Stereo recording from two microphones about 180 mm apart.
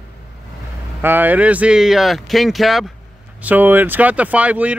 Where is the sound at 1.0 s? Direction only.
10° right (ahead or behind).